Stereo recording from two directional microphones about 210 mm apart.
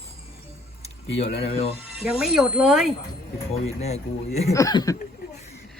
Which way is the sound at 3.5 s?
30° left (ahead or behind).